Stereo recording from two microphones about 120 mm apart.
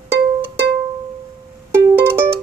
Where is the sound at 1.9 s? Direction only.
20° right (ahead or behind).